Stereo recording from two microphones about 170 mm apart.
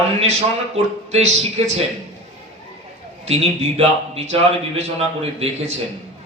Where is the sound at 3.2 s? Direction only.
35° right (ahead or behind).